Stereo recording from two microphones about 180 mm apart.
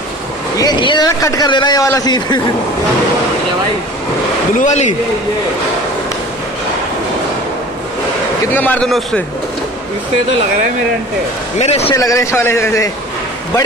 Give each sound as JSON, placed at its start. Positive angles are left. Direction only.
{"t": 0.6, "sound": "a man's voice", "side_deg": 25}
{"t": 4.6, "sound": "speech", "side_deg": 40}
{"t": 8.5, "sound": "speech", "side_deg": 5}
{"t": 11.5, "sound": "a man's voice", "side_deg": 35}
{"t": 11.9, "sound": "speech", "side_deg": 20}